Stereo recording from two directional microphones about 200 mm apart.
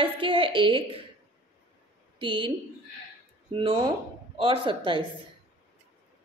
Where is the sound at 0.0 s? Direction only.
25° right (ahead or behind).